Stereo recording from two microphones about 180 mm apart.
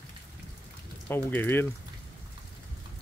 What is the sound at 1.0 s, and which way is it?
Speech, 10° left (ahead or behind).